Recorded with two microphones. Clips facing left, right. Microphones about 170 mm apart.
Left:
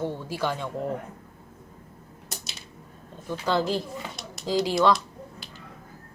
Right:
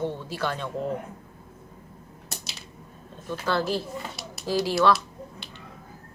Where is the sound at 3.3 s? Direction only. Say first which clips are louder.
Left 1 dB; 15° left (ahead or behind).